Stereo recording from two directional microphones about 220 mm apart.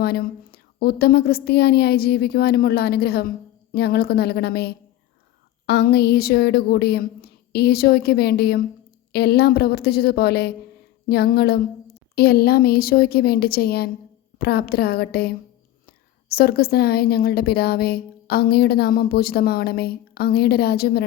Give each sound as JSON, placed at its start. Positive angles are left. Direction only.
{"t": 0.0, "sound": "a woman's voice", "side_deg": 45}